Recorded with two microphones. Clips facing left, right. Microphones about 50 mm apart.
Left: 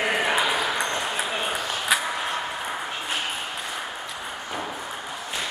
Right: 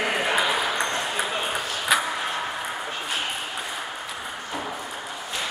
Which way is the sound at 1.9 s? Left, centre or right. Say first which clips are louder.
Right 2 dB; centre.